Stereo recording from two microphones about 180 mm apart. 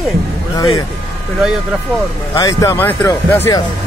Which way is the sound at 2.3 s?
20° left (ahead or behind).